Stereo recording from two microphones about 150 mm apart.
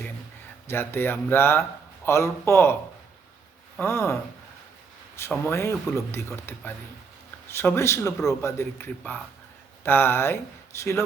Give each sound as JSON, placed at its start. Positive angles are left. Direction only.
{"t": 0.7, "sound": "speech", "side_deg": 15}
{"t": 3.8, "sound": "speech", "side_deg": 15}
{"t": 5.5, "sound": "speech", "side_deg": 20}